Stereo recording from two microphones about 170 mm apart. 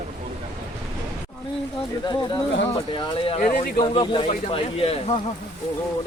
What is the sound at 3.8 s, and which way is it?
Speech, 30° left (ahead or behind).